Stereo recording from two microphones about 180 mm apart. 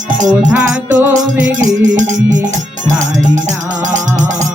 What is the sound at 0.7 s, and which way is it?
Music, 10° right (ahead or behind).